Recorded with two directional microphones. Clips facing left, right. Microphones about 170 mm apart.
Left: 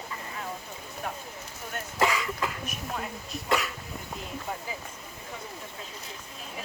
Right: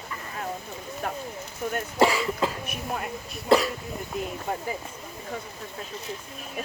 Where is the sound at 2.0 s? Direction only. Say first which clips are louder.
Right 5 dB; 30° right (ahead or behind).